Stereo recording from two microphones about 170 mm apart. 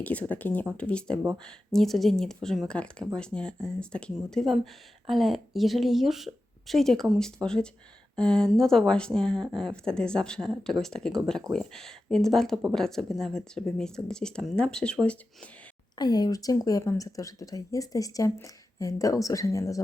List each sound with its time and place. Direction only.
0.0 s speech: 10° left (ahead or behind)
16.0 s speech: 25° left (ahead or behind)